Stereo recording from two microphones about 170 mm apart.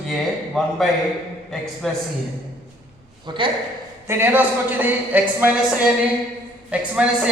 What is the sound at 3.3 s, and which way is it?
Speech, 25° right (ahead or behind).